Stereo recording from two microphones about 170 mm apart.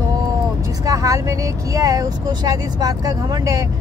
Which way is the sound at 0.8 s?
20° right (ahead or behind).